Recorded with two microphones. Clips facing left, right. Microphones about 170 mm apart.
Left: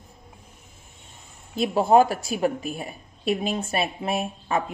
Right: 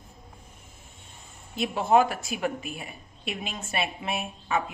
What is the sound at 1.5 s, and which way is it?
A woman's voice, 35° left (ahead or behind).